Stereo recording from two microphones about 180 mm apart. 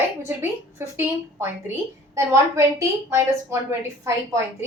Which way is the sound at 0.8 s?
15° right (ahead or behind).